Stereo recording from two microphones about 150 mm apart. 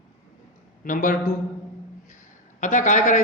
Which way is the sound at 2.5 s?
55° left (ahead or behind).